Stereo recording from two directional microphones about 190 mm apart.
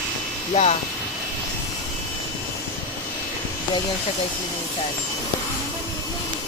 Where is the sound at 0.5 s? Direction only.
35° left (ahead or behind).